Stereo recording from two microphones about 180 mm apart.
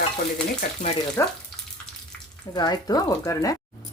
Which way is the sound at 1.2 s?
15° left (ahead or behind).